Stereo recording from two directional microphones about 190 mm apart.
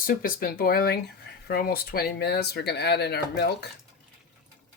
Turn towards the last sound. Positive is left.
turn(degrees=60)  # may be behind; listen again after turning